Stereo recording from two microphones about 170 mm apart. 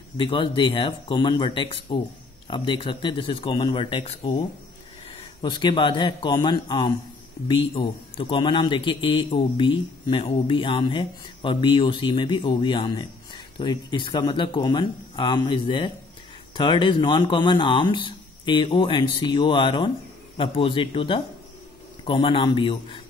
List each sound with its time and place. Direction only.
0.2 s a man's voice: 30° left (ahead or behind)